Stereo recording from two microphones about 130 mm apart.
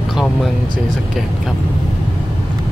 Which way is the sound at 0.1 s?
Centre (ahead or behind).